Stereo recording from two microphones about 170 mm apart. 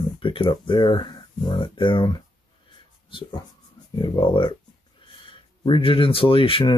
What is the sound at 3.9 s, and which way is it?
Speech, 30° left (ahead or behind).